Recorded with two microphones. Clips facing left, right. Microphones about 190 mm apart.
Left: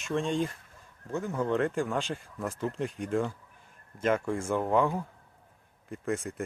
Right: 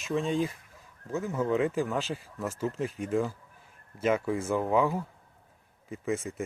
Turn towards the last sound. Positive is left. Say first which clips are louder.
# right 1 dB
turn(degrees=0)  # may be behind; listen again after turning